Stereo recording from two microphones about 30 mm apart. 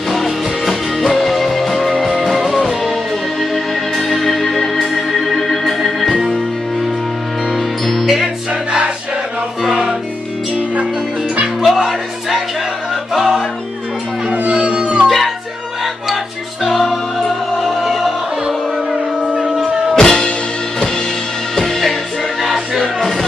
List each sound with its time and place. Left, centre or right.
0.1 s music: centre
4.7 s organ: centre
5.2 s organ: centre
7.5 s music: centre
11.6 s music: centre
14.5 s howl: right
15.0 s music: centre
16.9 s music: centre
19.3 s a sound: right
20.0 s music: left
21.5 s music: centre
22.4 s music: centre